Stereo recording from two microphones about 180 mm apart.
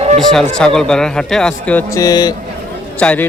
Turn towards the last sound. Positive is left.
turn(degrees=10)  # may be behind; listen again after turning